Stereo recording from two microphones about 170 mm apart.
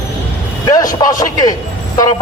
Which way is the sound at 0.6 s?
20° left (ahead or behind).